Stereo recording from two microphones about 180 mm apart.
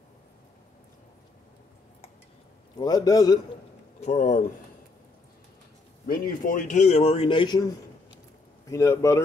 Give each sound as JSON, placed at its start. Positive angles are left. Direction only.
{"t": 2.8, "sound": "a man's voice", "side_deg": 20}
{"t": 4.0, "sound": "a man's voice", "side_deg": 40}
{"t": 6.0, "sound": "a man's voice", "side_deg": 55}